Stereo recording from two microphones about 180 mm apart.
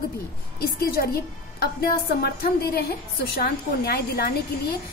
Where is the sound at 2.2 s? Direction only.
65° left (ahead or behind).